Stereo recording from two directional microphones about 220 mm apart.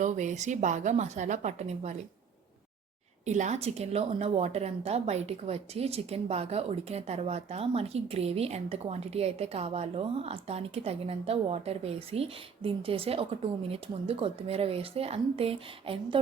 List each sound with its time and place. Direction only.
0.0 s a woman's voice: 35° right (ahead or behind)
3.2 s a woman's voice: 30° right (ahead or behind)